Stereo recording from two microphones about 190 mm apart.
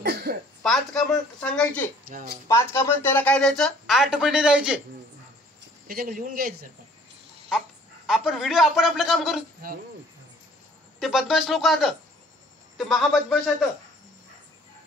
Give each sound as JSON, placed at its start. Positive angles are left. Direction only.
{"t": 0.0, "sound": "throat clearing", "side_deg": -55}
{"t": 0.7, "sound": "speech", "side_deg": 0}
{"t": 2.0, "sound": "speech", "side_deg": -50}
{"t": 2.4, "sound": "speech", "side_deg": 15}
{"t": 5.9, "sound": "speech", "side_deg": -50}
{"t": 8.1, "sound": "speech", "side_deg": 0}
{"t": 11.0, "sound": "speech", "side_deg": 0}